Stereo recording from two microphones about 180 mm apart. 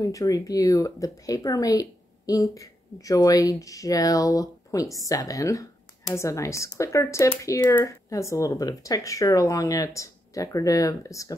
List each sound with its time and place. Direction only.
0.0 s speech: 20° left (ahead or behind)